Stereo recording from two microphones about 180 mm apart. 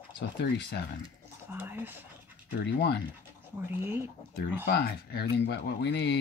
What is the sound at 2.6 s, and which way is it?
Speech, 70° left (ahead or behind).